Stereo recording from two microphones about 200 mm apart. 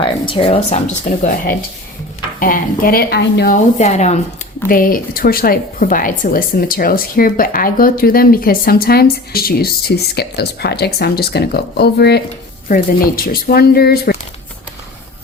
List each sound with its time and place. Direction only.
0.0 s speech: 25° left (ahead or behind)
1.1 s speech: 45° left (ahead or behind)
2.4 s speech: 45° left (ahead or behind)
3.8 s speech: 35° left (ahead or behind)
4.7 s speech: 45° left (ahead or behind)
12.6 s speech: 45° left (ahead or behind)